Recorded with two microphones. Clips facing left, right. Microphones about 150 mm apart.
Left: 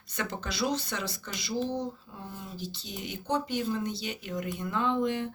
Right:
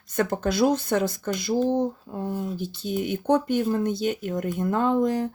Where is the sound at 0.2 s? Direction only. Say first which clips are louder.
Right 10 dB; 50° right (ahead or behind).